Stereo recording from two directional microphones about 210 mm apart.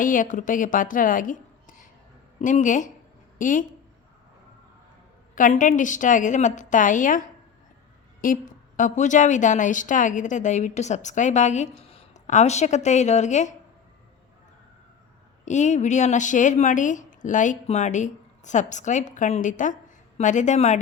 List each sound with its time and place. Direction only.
0.0 s a woman's voice: 40° left (ahead or behind)
5.3 s a woman's voice: 40° left (ahead or behind)
15.4 s a woman's voice: 35° left (ahead or behind)